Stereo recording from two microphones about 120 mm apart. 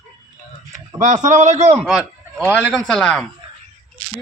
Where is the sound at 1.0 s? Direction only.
90° right.